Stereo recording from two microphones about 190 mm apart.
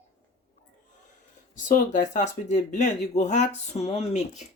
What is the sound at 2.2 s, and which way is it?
Speech, 40° left (ahead or behind).